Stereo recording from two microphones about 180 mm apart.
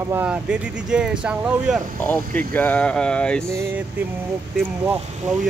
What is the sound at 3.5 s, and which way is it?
Speech, 15° right (ahead or behind).